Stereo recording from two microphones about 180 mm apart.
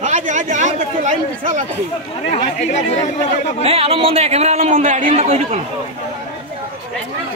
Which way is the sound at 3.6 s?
30° right (ahead or behind).